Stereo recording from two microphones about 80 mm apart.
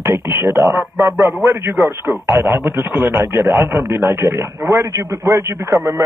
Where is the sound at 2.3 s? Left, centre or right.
Right.